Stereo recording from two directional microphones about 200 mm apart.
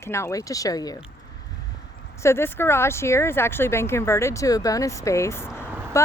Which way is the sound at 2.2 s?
10° left (ahead or behind).